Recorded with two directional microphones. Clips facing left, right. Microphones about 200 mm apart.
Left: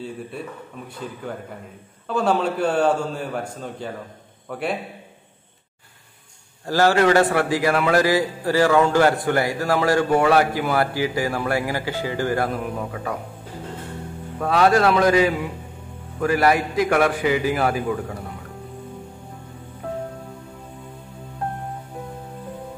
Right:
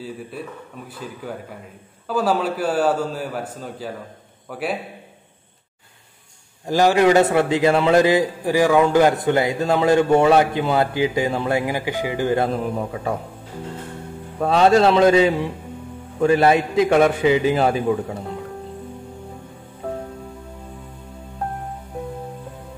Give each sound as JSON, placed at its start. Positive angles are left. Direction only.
{"t": 1.2, "sound": "a man's voice", "side_deg": -5}
{"t": 6.6, "sound": "a man's voice", "side_deg": -15}
{"t": 14.4, "sound": "a man's voice", "side_deg": -25}